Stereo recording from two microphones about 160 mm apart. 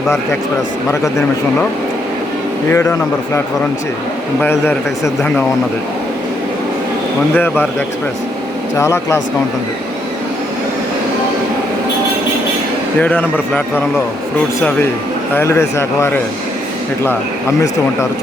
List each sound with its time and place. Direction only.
2.6 s a man's voice: 20° left (ahead or behind)
4.4 s a man's voice: 15° left (ahead or behind)
7.3 s a man's voice: 10° left (ahead or behind)
8.8 s a man's voice: 20° left (ahead or behind)
13.0 s a man's voice: 10° left (ahead or behind)
15.4 s a man's voice: 15° left (ahead or behind)